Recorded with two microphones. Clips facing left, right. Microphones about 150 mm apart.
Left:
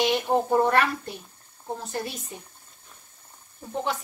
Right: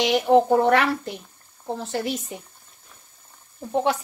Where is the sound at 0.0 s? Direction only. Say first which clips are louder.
Right 6 dB; 90° right.